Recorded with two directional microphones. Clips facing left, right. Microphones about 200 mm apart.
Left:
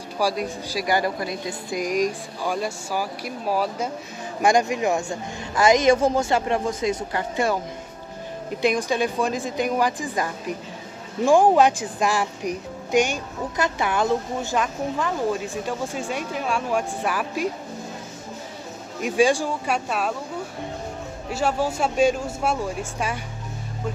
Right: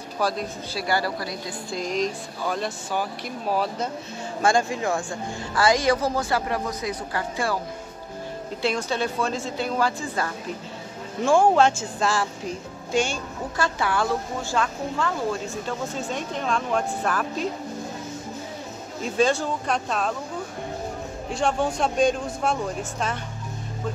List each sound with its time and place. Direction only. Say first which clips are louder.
0.2 s a woman's voice: left 2 dB; 10° left (ahead or behind)
8.6 s a woman's voice: left 4 dB; 15° left (ahead or behind)
18.9 s a woman's voice: left 3 dB; 15° left (ahead or behind)
21.3 s a woman's voice: left 1 dB; 5° left (ahead or behind)